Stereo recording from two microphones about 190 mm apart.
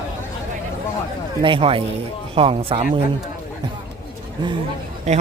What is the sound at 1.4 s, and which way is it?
A man's voice, 25° right (ahead or behind).